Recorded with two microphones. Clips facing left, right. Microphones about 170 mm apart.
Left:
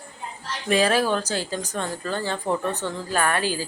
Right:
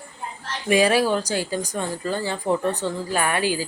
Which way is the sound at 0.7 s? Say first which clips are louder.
Right 2 dB; 15° right (ahead or behind).